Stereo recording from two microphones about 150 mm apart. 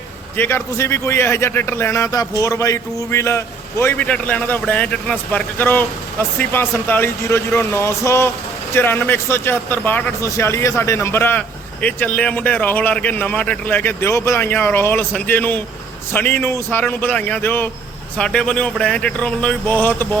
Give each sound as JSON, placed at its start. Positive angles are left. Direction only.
{"t": 0.3, "sound": "a man's voice", "side_deg": 15}